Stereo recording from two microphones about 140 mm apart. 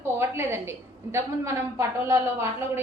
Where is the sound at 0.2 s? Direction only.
20° right (ahead or behind).